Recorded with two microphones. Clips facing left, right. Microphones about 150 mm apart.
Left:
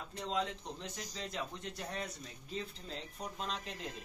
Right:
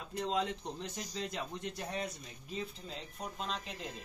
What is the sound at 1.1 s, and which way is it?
Speech, 20° right (ahead or behind).